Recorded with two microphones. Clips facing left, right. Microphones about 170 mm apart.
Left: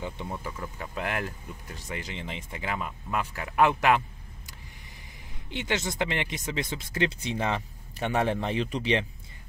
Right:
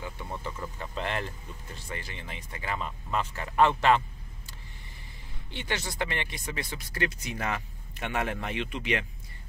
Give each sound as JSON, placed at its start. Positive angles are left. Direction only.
{"t": 0.3, "sound": "speech", "side_deg": 10}
{"t": 5.5, "sound": "speech", "side_deg": 20}